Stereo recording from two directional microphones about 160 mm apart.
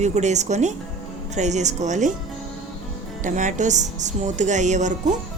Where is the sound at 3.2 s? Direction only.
50° right (ahead or behind).